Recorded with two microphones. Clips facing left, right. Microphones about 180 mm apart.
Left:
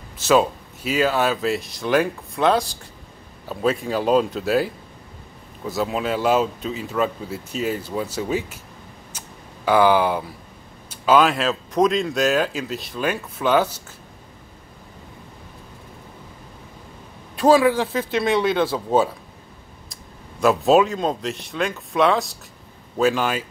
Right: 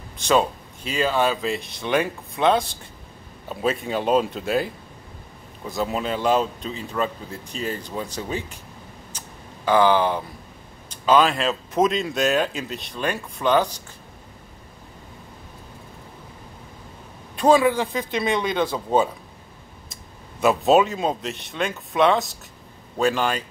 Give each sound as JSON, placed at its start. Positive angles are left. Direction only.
{"t": 0.2, "sound": "speech", "side_deg": 5}
{"t": 5.7, "sound": "speech", "side_deg": 0}
{"t": 9.1, "sound": "a sound", "side_deg": 10}
{"t": 9.7, "sound": "speech", "side_deg": 10}
{"t": 17.4, "sound": "speech", "side_deg": 0}
{"t": 20.3, "sound": "speech", "side_deg": 0}